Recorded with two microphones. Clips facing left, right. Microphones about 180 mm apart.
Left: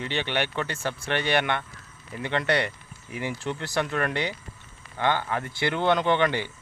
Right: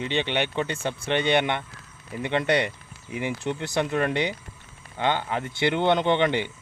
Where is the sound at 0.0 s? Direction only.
20° right (ahead or behind).